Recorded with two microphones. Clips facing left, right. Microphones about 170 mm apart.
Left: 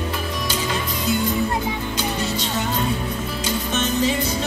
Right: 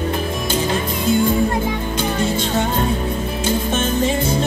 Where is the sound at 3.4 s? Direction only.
50° right (ahead or behind).